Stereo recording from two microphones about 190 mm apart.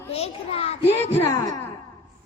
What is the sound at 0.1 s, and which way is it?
Speech, 30° left (ahead or behind).